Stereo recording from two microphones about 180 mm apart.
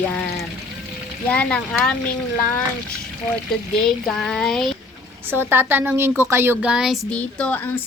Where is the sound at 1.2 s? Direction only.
5° left (ahead or behind).